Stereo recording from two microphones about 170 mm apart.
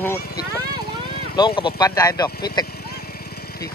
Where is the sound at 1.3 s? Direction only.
25° left (ahead or behind).